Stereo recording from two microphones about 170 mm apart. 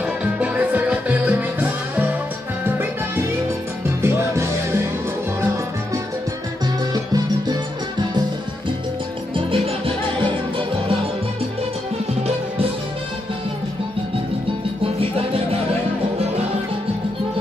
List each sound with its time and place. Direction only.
0.0 s music: 10° right (ahead or behind)
9.5 s music: 35° right (ahead or behind)